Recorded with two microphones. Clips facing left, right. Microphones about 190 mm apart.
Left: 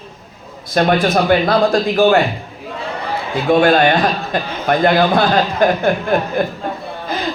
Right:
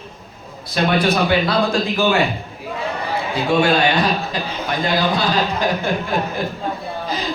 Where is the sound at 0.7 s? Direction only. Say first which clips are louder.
Left 4 dB; 45° left (ahead or behind).